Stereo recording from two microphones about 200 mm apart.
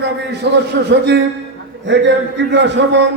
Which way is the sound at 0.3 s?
55° right (ahead or behind).